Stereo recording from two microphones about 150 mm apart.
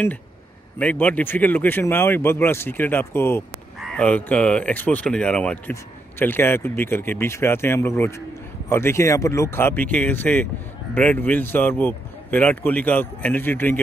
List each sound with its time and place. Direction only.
0.7 s speech: 10° left (ahead or behind)